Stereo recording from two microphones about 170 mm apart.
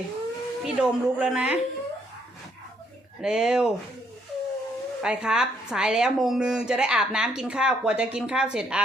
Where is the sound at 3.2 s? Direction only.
5° right (ahead or behind).